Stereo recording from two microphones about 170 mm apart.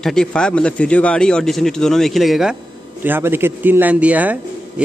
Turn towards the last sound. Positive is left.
turn(degrees=-10)  # may be behind; listen again after turning